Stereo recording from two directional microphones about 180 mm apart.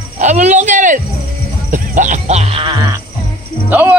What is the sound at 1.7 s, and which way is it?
Music, 45° right (ahead or behind).